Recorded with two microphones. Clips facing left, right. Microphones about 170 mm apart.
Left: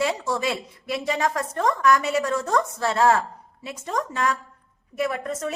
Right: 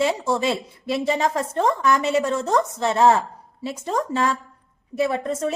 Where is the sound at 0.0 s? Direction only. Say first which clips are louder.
Right 3 dB; 25° right (ahead or behind).